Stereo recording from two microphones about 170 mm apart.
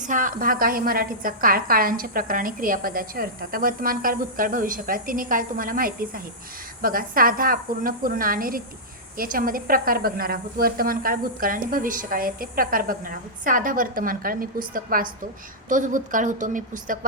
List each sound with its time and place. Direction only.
0.0 s a woman's voice: 50° right (ahead or behind)